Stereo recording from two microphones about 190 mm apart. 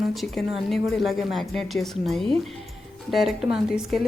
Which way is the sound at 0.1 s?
Centre (ahead or behind).